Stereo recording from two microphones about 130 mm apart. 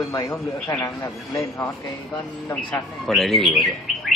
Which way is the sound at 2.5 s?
5° left (ahead or behind).